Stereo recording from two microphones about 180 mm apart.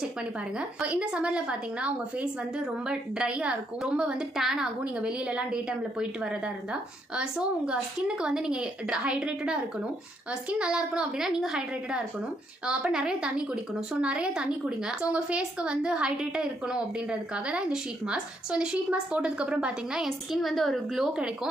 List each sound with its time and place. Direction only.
0.6 s a woman's voice: 5° right (ahead or behind)
10.6 s a woman's voice: 5° right (ahead or behind)